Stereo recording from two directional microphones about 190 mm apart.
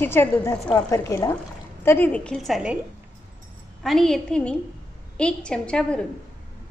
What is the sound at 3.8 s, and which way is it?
A woman's voice, centre (ahead or behind).